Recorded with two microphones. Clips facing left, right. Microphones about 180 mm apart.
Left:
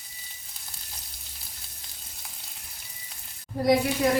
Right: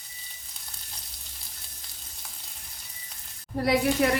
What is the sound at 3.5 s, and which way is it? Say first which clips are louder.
Speech: left 3 dB; 65° right (ahead or behind).